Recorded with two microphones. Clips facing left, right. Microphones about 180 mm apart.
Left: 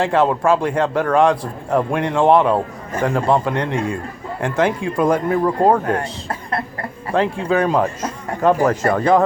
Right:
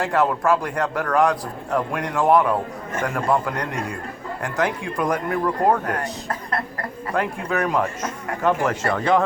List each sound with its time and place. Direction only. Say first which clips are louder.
0.0 s a man's voice: left 4 dB; 25° left (ahead or behind)